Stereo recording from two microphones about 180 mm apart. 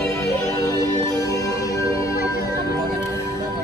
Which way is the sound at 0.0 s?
15° left (ahead or behind).